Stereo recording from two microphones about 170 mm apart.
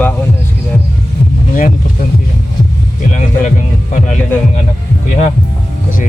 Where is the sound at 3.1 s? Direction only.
50° left (ahead or behind).